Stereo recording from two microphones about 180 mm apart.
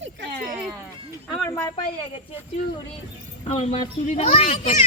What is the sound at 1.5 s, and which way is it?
Speech, 15° left (ahead or behind).